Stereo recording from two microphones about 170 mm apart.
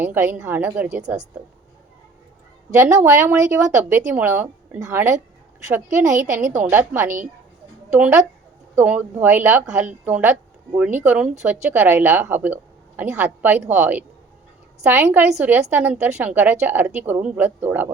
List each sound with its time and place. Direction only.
0.0 s speech: 15° right (ahead or behind)
2.8 s speech: 20° right (ahead or behind)
6.1 s a woman's voice: 45° right (ahead or behind)
6.6 s a woman's voice: 15° right (ahead or behind)